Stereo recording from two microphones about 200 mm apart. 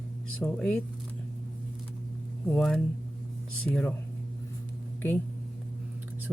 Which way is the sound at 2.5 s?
5° left (ahead or behind).